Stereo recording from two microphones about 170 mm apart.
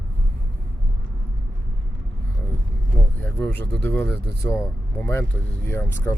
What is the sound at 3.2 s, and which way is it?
Speech, 10° left (ahead or behind).